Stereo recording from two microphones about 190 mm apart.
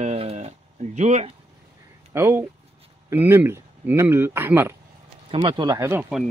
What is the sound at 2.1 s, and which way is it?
Speech, 10° right (ahead or behind).